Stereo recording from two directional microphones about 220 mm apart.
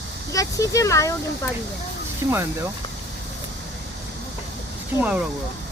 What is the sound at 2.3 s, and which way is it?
Speech, 10° right (ahead or behind).